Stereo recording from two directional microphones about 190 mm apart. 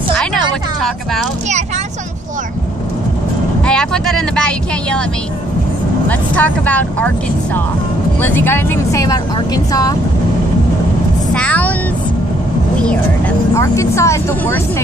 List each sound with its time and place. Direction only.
3.6 s speech: 5° left (ahead or behind)
6.0 s speech: 10° left (ahead or behind)
8.2 s speech: 10° left (ahead or behind)
11.3 s speech: 5° left (ahead or behind)
13.6 s speech: 15° left (ahead or behind)